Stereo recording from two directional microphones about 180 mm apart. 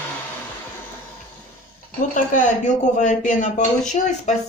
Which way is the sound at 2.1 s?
45° left (ahead or behind).